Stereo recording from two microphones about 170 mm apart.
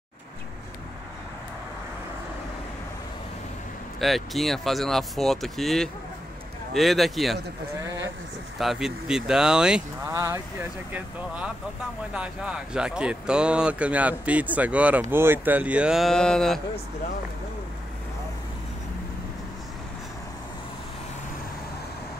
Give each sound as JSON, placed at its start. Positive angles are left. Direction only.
{"t": 4.0, "sound": "speech", "side_deg": 0}
{"t": 7.8, "sound": "speech", "side_deg": -20}
{"t": 8.5, "sound": "speech", "side_deg": 0}
{"t": 10.0, "sound": "speech", "side_deg": -15}
{"t": 10.9, "sound": "speech", "side_deg": -5}